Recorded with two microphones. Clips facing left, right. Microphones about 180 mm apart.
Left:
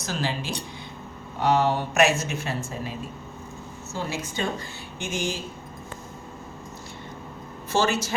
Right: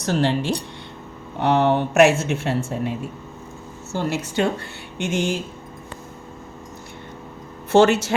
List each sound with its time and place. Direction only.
0.0 s a woman's voice: 65° right (ahead or behind)
7.7 s speech: 65° right (ahead or behind)